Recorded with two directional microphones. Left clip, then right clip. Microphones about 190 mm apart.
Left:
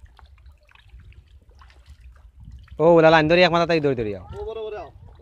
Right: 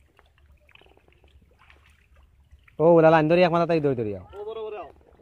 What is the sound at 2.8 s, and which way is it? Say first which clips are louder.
A man's voice: left 2 dB; 10° left (ahead or behind).